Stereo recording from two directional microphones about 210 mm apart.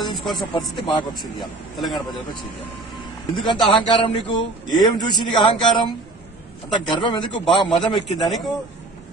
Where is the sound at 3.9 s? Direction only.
20° left (ahead or behind).